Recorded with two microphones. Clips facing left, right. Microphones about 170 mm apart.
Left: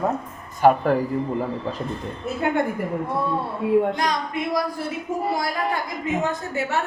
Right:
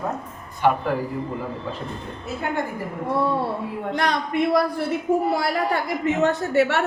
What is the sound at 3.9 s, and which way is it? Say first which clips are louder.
Speech: right 2 dB; 60° right (ahead or behind).